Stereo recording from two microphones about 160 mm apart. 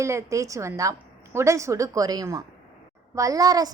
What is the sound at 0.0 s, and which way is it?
A woman's voice, 20° right (ahead or behind).